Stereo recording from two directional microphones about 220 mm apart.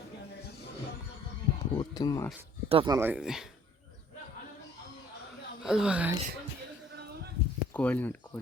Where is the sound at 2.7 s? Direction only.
20° right (ahead or behind).